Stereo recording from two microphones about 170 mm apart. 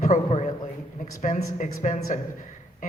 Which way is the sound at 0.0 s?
40° left (ahead or behind).